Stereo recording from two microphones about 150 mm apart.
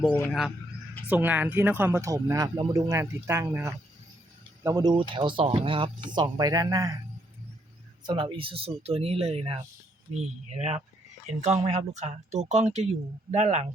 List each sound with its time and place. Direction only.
0.3 s speech: centre (ahead or behind); by 6.9 s 25° right (ahead or behind)
8.0 s speech: 30° right (ahead or behind); by 13.7 s 50° right (ahead or behind)